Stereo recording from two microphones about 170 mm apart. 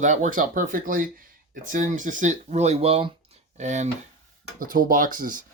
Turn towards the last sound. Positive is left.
turn(degrees=-55)  # may be behind; listen again after turning